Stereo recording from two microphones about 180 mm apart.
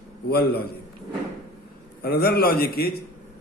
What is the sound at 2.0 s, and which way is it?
Speech, 60° left (ahead or behind).